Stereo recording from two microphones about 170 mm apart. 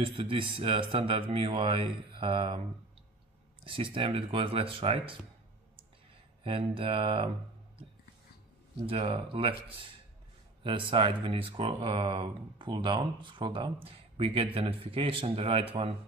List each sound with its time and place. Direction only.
0.0 s speech: 30° right (ahead or behind)
3.6 s speech: 30° right (ahead or behind)
6.4 s speech: 35° right (ahead or behind)
8.8 s speech: 35° right (ahead or behind)